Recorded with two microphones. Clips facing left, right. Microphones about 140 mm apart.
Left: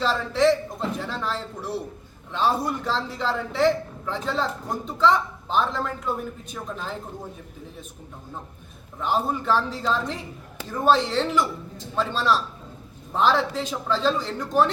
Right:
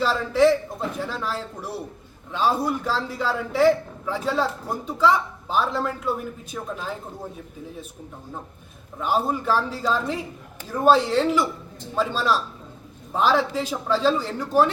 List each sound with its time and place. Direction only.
0.0 s a man's voice: 10° right (ahead or behind)
9.0 s a man's voice: 5° right (ahead or behind)